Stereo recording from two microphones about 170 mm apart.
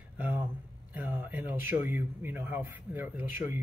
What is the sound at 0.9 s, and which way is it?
Speech, 10° right (ahead or behind).